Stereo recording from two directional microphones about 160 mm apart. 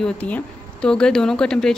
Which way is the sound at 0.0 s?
10° left (ahead or behind).